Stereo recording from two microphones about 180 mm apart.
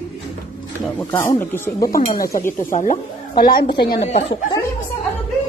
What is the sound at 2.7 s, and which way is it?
Speech, 45° left (ahead or behind).